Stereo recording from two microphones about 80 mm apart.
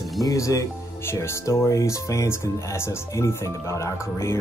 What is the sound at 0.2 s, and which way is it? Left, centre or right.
Speech, left.